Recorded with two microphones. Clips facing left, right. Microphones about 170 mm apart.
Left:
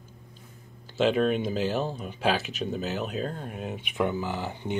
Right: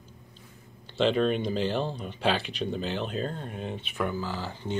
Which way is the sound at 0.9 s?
5° left (ahead or behind).